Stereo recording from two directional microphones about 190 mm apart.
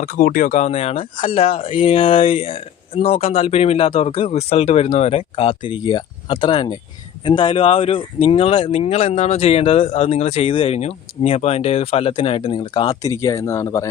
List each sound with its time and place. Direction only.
0.0 s speech: 45° left (ahead or behind); by 13.9 s 15° left (ahead or behind)